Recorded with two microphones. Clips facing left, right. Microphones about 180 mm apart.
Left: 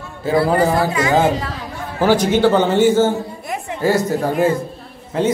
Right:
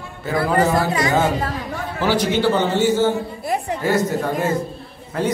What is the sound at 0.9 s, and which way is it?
Speech, 35° right (ahead or behind).